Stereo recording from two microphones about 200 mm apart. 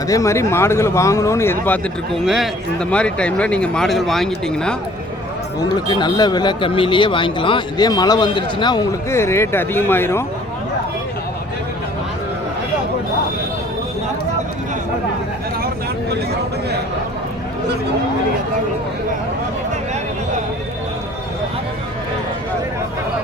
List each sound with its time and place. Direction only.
0.1 s speech: 15° left (ahead or behind)
5.5 s speech: 20° left (ahead or behind)